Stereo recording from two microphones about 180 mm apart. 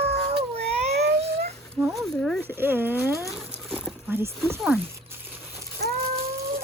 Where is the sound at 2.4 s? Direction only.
10° right (ahead or behind).